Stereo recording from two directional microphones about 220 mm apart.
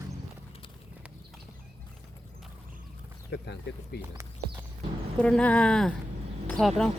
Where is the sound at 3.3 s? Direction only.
50° left (ahead or behind).